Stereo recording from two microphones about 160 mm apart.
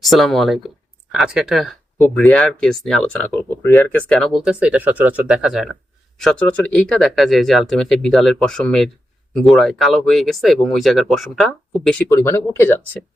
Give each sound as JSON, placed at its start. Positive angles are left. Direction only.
{"t": 0.0, "sound": "speech", "side_deg": 0}
{"t": 6.5, "sound": "speech", "side_deg": 10}
{"t": 12.0, "sound": "speech", "side_deg": 15}